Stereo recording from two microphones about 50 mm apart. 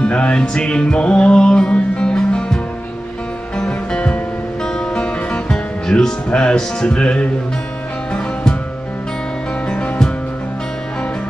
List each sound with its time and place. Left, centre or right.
0.0 s music: left
9.7 s music: left